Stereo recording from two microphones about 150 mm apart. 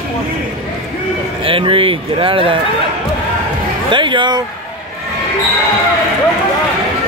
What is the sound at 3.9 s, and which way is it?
Speech, 35° right (ahead or behind).